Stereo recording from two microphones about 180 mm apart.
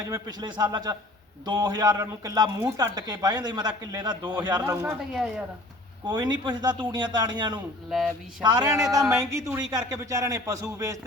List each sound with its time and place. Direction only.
0.0 s speech: 20° right (ahead or behind)
4.9 s speech: 5° right (ahead or behind)
6.1 s speech: 25° right (ahead or behind)
7.9 s speech: centre (ahead or behind)
8.4 s speech: 25° right (ahead or behind)